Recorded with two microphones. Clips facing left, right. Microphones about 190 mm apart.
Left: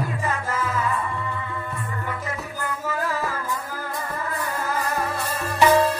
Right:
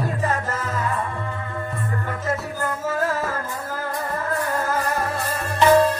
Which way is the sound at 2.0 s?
45° right (ahead or behind).